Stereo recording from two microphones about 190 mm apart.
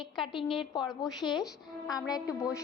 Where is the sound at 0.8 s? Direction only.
Centre (ahead or behind).